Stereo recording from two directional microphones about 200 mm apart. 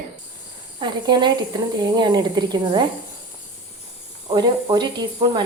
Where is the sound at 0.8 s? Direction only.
20° right (ahead or behind).